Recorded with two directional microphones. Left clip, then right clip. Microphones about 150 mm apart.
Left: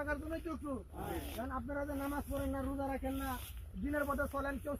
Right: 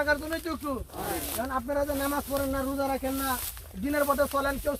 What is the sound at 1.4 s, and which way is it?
Speech, 30° right (ahead or behind).